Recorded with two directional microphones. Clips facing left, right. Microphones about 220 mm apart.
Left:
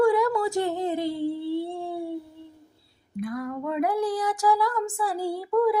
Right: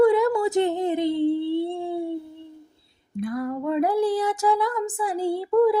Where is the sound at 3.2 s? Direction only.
30° right (ahead or behind).